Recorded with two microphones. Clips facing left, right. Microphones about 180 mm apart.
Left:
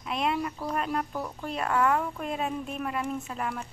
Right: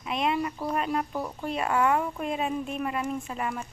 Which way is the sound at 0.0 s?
Centre (ahead or behind).